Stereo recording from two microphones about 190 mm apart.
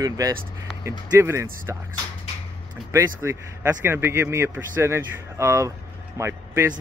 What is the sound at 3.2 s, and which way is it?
A man's voice, 10° right (ahead or behind).